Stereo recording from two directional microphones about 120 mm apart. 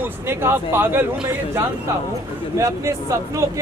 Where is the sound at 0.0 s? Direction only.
20° right (ahead or behind).